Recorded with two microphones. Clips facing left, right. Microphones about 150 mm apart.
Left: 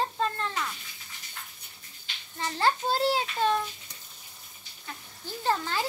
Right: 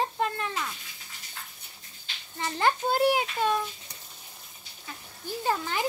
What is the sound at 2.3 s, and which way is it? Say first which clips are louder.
Speech: right 1 dB; 15° right (ahead or behind).